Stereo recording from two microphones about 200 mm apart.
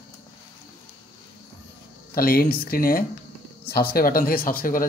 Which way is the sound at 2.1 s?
45° left (ahead or behind).